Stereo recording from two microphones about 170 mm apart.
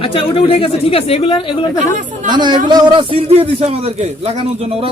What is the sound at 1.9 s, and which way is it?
Speech, 45° right (ahead or behind).